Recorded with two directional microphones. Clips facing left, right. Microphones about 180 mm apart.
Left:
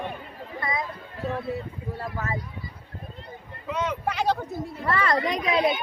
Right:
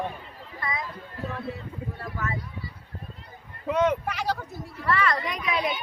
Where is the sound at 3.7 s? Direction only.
55° right (ahead or behind).